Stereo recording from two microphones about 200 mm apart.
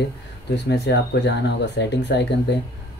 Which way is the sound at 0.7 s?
60° left (ahead or behind).